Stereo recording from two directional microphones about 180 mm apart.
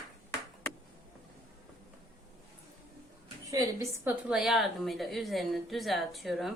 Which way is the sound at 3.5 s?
15° right (ahead or behind).